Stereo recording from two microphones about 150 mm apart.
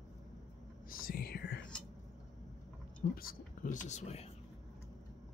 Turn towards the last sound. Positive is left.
turn(degrees=45)  # may be behind; listen again after turning